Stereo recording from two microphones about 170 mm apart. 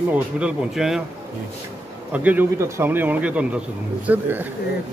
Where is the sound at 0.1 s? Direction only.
5° right (ahead or behind).